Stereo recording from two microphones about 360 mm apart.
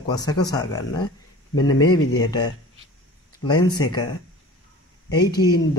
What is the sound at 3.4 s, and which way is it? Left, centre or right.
Speech, centre.